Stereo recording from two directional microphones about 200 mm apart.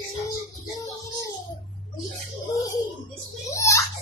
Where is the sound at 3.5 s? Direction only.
15° left (ahead or behind).